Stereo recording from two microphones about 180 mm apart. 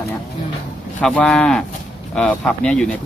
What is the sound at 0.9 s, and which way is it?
Speech, 5° left (ahead or behind).